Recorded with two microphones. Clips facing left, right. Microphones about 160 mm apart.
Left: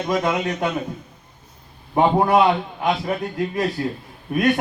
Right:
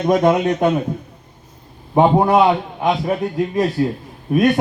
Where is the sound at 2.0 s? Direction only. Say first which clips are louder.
Right 3 dB; 20° right (ahead or behind).